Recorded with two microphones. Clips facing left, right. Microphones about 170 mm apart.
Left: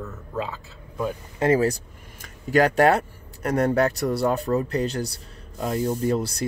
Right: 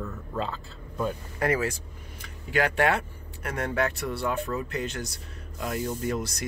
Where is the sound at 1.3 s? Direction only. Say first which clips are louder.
Left 7 dB; 30° left (ahead or behind).